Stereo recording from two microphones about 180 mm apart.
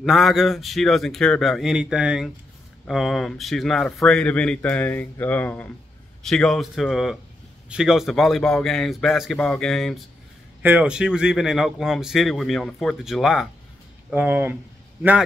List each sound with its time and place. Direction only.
0.0 s speech: centre (ahead or behind)
10.6 s speech: 10° right (ahead or behind)